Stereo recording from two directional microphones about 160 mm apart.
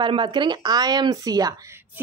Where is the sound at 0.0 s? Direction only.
30° right (ahead or behind).